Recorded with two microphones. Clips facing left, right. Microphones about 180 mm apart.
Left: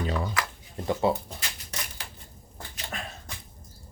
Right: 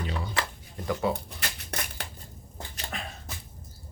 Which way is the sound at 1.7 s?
60° right (ahead or behind).